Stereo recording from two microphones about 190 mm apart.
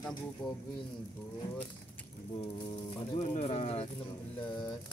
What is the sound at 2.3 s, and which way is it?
Speech, 30° left (ahead or behind).